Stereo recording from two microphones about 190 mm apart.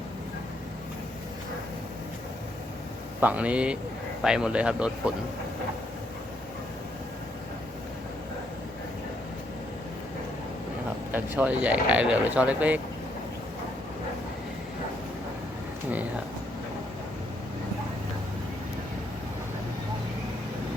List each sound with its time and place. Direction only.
3.2 s speech: 10° right (ahead or behind)
11.1 s speech: 10° right (ahead or behind)